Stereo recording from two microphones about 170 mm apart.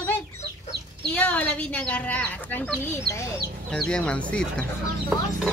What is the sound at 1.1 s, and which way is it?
Speech, 10° left (ahead or behind).